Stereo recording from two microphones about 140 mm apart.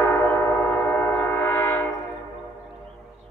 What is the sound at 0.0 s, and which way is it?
Train, 15° left (ahead or behind).